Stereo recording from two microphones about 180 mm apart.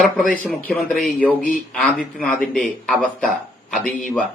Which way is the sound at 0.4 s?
5° left (ahead or behind).